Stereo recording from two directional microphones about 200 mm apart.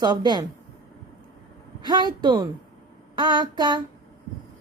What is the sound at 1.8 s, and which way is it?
Speech, 20° right (ahead or behind).